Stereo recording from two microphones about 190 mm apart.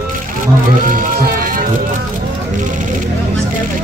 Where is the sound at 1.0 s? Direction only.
45° right (ahead or behind).